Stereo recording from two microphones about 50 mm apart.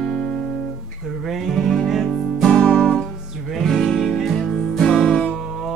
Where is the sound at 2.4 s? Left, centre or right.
Centre.